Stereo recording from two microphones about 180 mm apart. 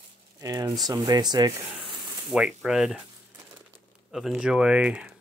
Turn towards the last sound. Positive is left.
turn(degrees=-5)  # may be behind; listen again after turning